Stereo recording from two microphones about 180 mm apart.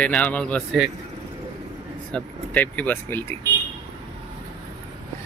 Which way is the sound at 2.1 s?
10° left (ahead or behind).